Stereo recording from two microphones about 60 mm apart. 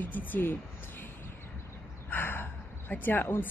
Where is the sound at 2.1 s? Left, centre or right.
Left.